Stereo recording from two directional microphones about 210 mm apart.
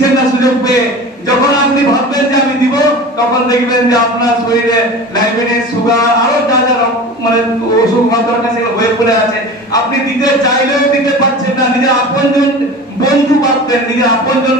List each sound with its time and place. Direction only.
13.0 s a man's voice: 20° left (ahead or behind)